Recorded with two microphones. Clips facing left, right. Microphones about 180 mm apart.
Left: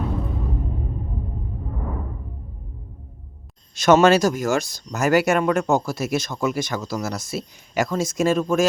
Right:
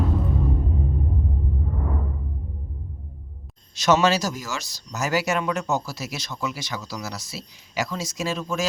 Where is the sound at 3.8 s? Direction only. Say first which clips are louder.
Left 5 dB; 55° left (ahead or behind).